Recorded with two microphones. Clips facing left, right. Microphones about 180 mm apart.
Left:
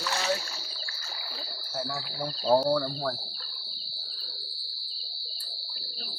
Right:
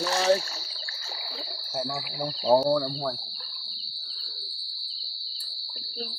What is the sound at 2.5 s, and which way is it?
Speech, 10° right (ahead or behind).